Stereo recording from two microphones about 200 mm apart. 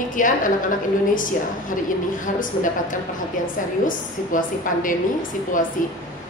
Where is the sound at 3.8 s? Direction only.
40° left (ahead or behind).